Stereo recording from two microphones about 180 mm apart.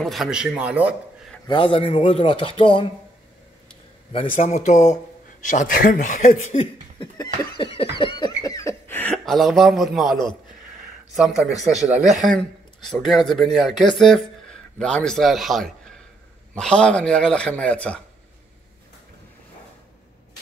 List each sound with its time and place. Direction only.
0.0 s speech: centre (ahead or behind)
1.5 s speech: 30° left (ahead or behind)
4.4 s speech: 40° left (ahead or behind)
6.5 s laughter: 35° left (ahead or behind)
7.2 s speech: 30° left (ahead or behind)
8.0 s a sound: 25° left (ahead or behind); by 10.1 s centre (ahead or behind)
11.1 s speech: centre (ahead or behind)